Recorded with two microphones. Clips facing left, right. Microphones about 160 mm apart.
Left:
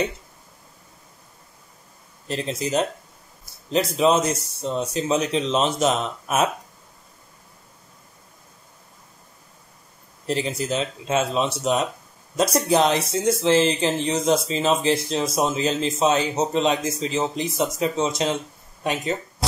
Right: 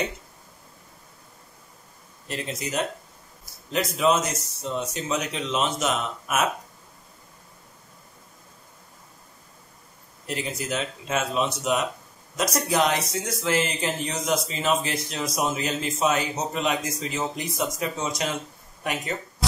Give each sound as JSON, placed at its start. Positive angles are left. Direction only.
{"t": 2.2, "sound": "speech", "side_deg": 30}
{"t": 10.2, "sound": "speech", "side_deg": 30}